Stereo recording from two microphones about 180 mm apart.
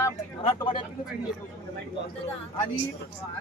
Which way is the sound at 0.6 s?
25° left (ahead or behind).